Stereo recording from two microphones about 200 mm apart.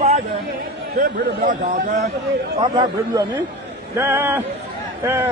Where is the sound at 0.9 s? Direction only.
40° right (ahead or behind).